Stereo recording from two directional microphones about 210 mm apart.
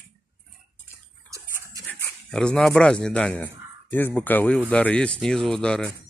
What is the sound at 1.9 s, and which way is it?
Speech, 5° left (ahead or behind).